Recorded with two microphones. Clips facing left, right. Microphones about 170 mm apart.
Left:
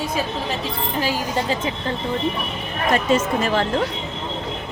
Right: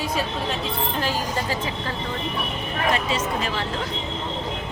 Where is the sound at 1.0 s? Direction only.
15° left (ahead or behind).